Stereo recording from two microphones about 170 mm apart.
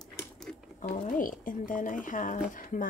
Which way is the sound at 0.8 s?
55° left (ahead or behind).